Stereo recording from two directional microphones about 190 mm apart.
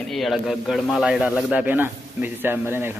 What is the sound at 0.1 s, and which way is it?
Speech, centre (ahead or behind).